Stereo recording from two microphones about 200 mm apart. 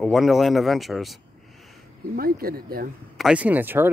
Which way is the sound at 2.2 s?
50° right (ahead or behind).